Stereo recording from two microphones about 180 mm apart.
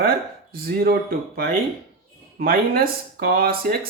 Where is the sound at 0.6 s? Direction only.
60° right (ahead or behind).